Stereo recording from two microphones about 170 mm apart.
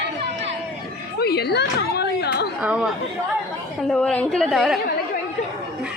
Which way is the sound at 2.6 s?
5° right (ahead or behind).